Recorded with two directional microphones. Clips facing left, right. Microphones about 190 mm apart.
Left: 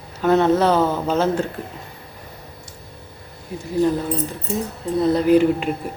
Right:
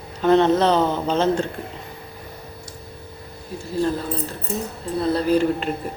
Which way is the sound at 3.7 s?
20° left (ahead or behind).